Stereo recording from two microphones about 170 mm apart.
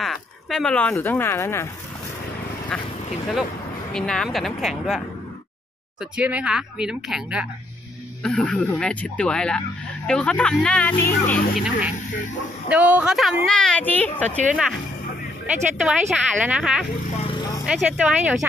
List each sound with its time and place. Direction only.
0.0 s speech: centre (ahead or behind)
2.7 s speech: 5° left (ahead or behind)
3.9 s speech: 5° left (ahead or behind)
8.2 s speech: 5° left (ahead or behind)
11.5 s speech: 5° right (ahead or behind)
14.5 s speech: 5° right (ahead or behind)
15.8 s speech: 5° right (ahead or behind)
17.2 s vehicle: 30° left (ahead or behind)
17.6 s speech: 5° right (ahead or behind)